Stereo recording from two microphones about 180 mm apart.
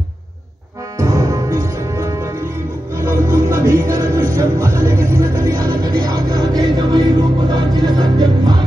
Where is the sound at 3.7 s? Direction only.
15° right (ahead or behind).